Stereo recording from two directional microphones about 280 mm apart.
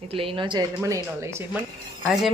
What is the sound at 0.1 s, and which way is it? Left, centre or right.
A woman's voice, centre.